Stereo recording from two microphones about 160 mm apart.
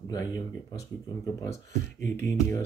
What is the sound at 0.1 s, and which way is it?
Speech, 20° left (ahead or behind).